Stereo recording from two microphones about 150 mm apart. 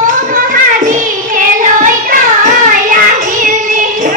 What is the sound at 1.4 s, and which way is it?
Child singing, 65° right (ahead or behind).